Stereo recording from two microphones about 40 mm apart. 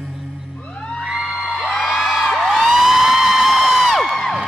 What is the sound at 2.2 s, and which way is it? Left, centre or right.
Crowd, centre.